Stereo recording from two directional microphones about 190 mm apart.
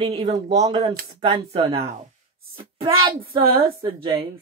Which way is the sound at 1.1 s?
25° right (ahead or behind).